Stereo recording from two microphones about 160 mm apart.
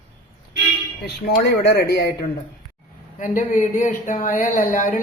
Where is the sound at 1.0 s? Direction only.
90° left.